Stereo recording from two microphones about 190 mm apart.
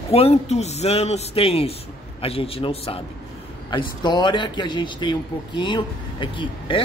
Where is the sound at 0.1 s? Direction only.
35° left (ahead or behind).